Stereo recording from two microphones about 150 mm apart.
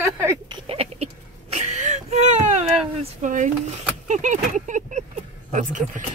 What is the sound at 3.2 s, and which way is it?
Speech, 55° right (ahead or behind).